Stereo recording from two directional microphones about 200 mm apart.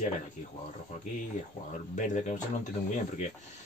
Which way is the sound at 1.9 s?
40° left (ahead or behind).